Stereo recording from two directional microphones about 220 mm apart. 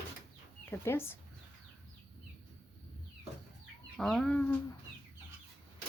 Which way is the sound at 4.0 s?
Centre (ahead or behind).